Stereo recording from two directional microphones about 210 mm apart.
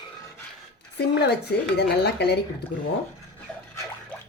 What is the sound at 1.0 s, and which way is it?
Speech, 50° left (ahead or behind).